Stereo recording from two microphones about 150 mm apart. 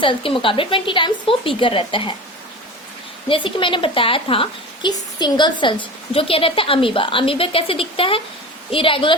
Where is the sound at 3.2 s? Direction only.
35° left (ahead or behind).